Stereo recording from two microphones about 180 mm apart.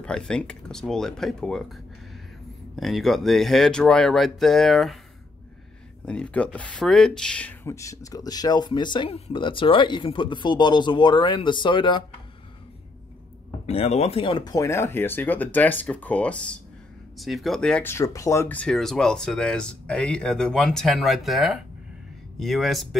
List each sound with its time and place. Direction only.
0.0 s speech: 5° left (ahead or behind)
6.0 s speech: 5° left (ahead or behind); by 12.0 s 25° left (ahead or behind)
13.7 s speech: 35° left (ahead or behind); by 22.8 s centre (ahead or behind)